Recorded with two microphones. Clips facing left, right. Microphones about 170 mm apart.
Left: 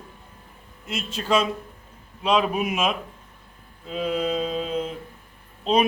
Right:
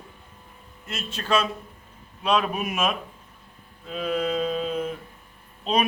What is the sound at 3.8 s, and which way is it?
Mantra, 20° left (ahead or behind).